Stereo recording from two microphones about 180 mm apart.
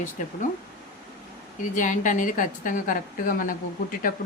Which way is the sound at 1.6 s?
45° left (ahead or behind).